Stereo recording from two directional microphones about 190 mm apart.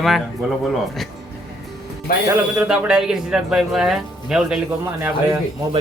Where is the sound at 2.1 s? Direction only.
50° left (ahead or behind).